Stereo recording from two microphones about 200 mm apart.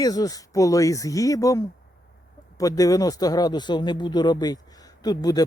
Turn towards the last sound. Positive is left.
turn(degrees=20)  # may be behind; listen again after turning